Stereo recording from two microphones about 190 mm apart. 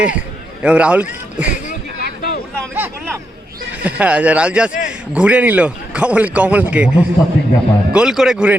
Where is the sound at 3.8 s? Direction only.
5° right (ahead or behind).